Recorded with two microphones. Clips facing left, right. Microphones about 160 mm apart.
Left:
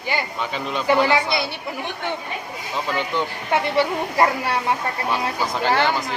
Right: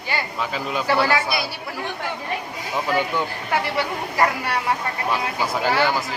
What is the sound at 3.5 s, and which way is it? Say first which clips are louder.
Speech: left 2 dB; 25° left (ahead or behind).